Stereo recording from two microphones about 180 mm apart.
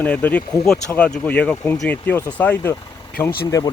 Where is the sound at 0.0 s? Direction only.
10° left (ahead or behind).